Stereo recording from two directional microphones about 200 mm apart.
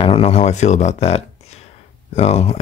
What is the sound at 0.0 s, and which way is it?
Speech, 30° left (ahead or behind).